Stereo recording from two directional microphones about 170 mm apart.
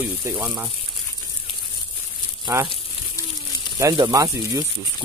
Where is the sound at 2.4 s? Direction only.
25° right (ahead or behind).